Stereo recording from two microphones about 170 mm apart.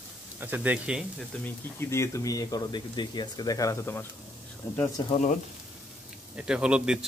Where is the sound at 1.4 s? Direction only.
15° left (ahead or behind).